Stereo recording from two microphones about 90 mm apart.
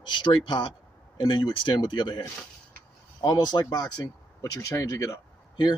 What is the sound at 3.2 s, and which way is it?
Speech, 50° left (ahead or behind).